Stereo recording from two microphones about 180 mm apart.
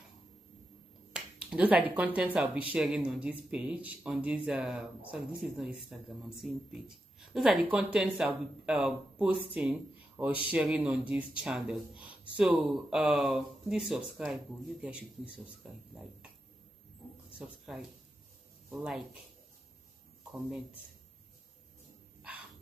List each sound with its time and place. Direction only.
1.1 s speech: 5° right (ahead or behind)
17.4 s speech: centre (ahead or behind)
20.2 s speech: 5° right (ahead or behind)